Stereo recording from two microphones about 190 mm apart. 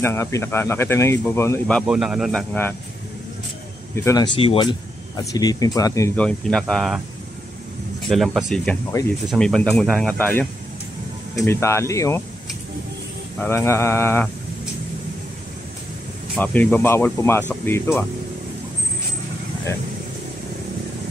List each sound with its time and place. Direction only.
0.0 s speech: 15° left (ahead or behind); by 2.4 s centre (ahead or behind)
3.9 s speech: 15° left (ahead or behind)
8.1 s speech: centre (ahead or behind); by 12.2 s 15° left (ahead or behind)
13.4 s speech: 15° left (ahead or behind)
16.3 s speech: 10° left (ahead or behind)